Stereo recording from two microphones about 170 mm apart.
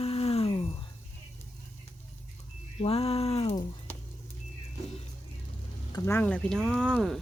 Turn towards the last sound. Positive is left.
turn(degrees=5)  # may be behind; listen again after turning